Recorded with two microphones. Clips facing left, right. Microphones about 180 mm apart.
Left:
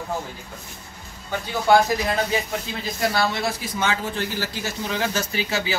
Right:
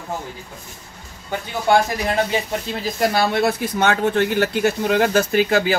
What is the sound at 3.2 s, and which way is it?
A man's voice, 55° right (ahead or behind).